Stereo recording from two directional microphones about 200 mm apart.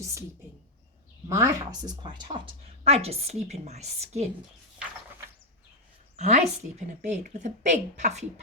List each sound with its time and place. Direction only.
1.3 s speech: 15° right (ahead or behind); by 4.3 s 35° right (ahead or behind)
6.1 s speech: 35° right (ahead or behind)